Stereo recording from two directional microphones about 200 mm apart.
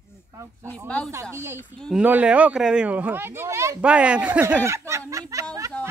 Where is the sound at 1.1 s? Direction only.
15° right (ahead or behind).